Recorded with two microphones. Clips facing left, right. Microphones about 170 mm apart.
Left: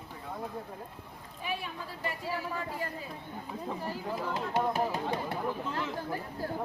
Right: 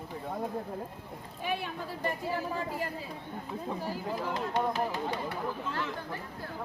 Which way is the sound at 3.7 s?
10° right (ahead or behind).